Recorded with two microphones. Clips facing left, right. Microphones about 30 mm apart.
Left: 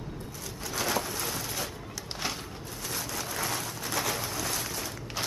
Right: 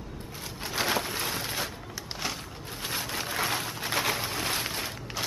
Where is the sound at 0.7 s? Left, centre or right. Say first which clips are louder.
Right 2 dB; right.